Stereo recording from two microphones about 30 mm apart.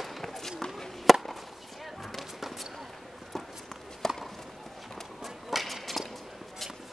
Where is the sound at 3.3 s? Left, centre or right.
Centre.